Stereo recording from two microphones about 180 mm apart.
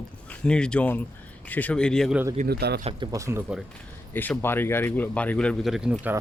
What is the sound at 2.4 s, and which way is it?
Speech, 65° right (ahead or behind).